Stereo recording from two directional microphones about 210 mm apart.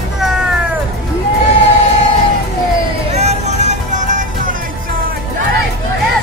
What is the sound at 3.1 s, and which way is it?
Music, 30° right (ahead or behind).